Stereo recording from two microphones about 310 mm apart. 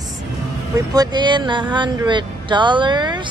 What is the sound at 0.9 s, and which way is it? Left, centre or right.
Speech, centre.